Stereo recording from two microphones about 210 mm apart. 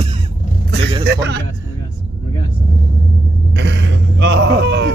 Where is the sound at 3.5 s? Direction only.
55° right (ahead or behind).